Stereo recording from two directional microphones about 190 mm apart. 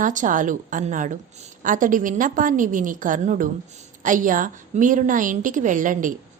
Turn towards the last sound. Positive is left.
turn(degrees=-45)  # may be behind; listen again after turning